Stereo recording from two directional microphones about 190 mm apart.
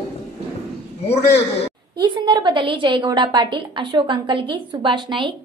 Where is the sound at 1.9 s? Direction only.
25° right (ahead or behind).